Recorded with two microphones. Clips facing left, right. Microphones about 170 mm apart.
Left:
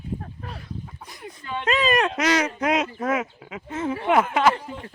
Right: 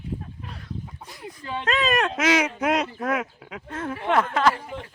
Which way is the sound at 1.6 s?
Centre (ahead or behind).